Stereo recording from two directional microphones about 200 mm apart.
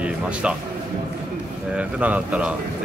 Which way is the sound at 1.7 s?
5° right (ahead or behind).